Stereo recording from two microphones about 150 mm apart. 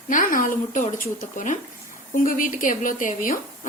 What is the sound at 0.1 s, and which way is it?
A woman's voice, 65° left (ahead or behind).